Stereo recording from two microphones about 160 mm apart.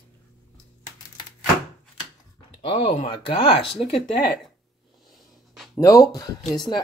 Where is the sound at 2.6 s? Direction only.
30° left (ahead or behind).